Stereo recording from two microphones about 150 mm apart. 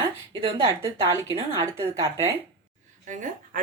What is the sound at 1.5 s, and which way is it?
Speech, 20° right (ahead or behind).